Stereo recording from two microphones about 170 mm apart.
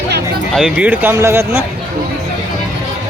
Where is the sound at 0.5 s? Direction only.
5° right (ahead or behind).